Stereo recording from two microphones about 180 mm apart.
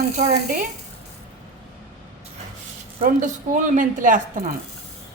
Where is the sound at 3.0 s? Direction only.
45° right (ahead or behind).